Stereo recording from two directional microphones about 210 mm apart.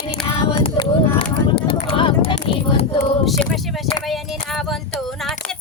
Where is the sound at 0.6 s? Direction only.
25° left (ahead or behind).